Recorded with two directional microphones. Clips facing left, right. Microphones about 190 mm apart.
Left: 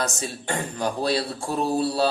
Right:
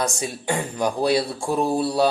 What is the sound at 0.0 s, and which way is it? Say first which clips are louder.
Speech: right 3 dB; 10° right (ahead or behind).